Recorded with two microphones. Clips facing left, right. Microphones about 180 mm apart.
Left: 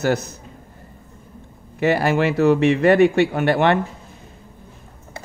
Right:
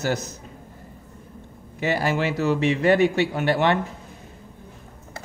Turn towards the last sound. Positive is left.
turn(degrees=60)  # may be behind; listen again after turning